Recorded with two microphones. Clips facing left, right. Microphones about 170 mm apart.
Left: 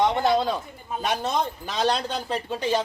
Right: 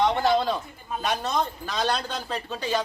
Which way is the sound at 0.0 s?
15° left (ahead or behind).